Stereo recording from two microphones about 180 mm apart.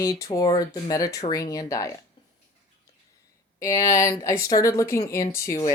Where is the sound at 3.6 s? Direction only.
15° left (ahead or behind).